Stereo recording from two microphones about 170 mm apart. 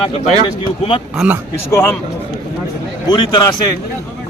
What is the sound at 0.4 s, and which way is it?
Speech, 30° left (ahead or behind).